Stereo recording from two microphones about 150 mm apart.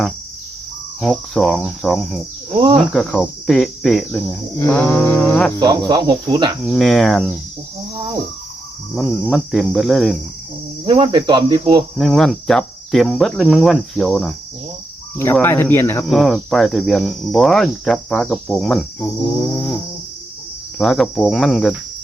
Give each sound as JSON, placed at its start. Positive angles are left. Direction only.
{"t": 1.0, "sound": "speech", "side_deg": 5}
{"t": 2.5, "sound": "cricket", "side_deg": -35}
{"t": 2.7, "sound": "speech", "side_deg": 0}
{"t": 4.1, "sound": "cricket", "side_deg": 10}
{"t": 5.5, "sound": "cricket", "side_deg": -30}
{"t": 6.7, "sound": "speech", "side_deg": 0}
{"t": 9.2, "sound": "speech", "side_deg": 0}
{"t": 10.8, "sound": "cricket", "side_deg": -30}
{"t": 11.9, "sound": "speech", "side_deg": 0}
{"t": 15.2, "sound": "cricket", "side_deg": 15}
{"t": 16.0, "sound": "speech", "side_deg": 0}
{"t": 19.5, "sound": "cricket", "side_deg": 15}
{"t": 20.7, "sound": "speech", "side_deg": 0}